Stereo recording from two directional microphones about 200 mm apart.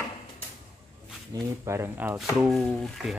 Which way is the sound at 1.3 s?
15° right (ahead or behind).